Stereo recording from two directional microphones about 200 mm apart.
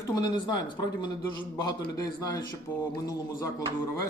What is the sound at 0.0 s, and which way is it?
Speech, 20° left (ahead or behind).